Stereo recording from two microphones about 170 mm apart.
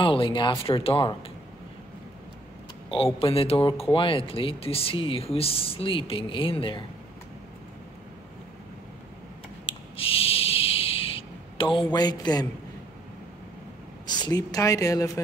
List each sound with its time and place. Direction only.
0.0 s speech: 30° left (ahead or behind)
3.2 s speech: 35° left (ahead or behind)
9.7 s a sound: 35° left (ahead or behind)
14.0 s a woman's voice: 25° left (ahead or behind)